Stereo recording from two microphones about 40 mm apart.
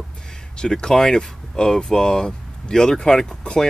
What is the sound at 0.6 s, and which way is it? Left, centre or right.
Speech, left.